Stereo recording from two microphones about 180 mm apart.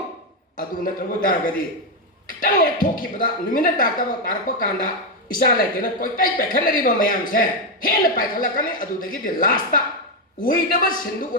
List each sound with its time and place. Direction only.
0.5 s speech: 50° left (ahead or behind)
2.4 s speech: 50° left (ahead or behind)